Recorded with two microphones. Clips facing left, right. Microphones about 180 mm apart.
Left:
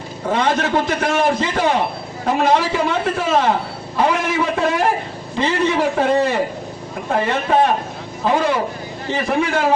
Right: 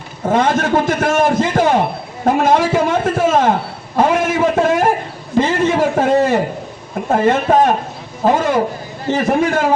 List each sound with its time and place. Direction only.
0.3 s a man's voice: 45° right (ahead or behind)